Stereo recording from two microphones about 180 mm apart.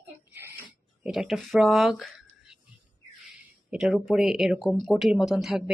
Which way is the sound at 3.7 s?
5° right (ahead or behind).